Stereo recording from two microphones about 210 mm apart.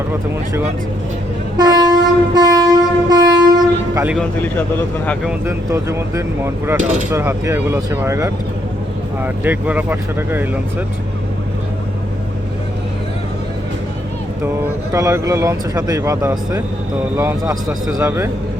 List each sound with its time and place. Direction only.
1.5 s train: 20° right (ahead or behind)
4.0 s speech: 5° right (ahead or behind)
5.5 s speech: 15° right (ahead or behind)
14.9 s speech: 15° right (ahead or behind)